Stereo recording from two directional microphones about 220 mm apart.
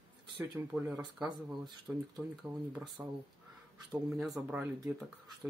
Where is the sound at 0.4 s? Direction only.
10° right (ahead or behind).